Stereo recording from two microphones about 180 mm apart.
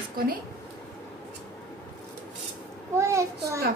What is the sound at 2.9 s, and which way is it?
Child singing, 15° right (ahead or behind).